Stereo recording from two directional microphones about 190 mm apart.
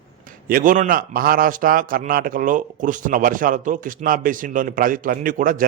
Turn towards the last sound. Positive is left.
turn(degrees=-45)  # may be behind; listen again after turning